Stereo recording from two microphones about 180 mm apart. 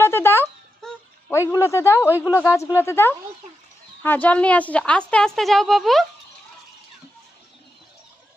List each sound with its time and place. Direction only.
0.0 s a sound: 10° left (ahead or behind)
1.3 s speech: 15° left (ahead or behind)
2.0 s a woman's voice: 10° right (ahead or behind)
2.4 s a woman's voice: 15° left (ahead or behind)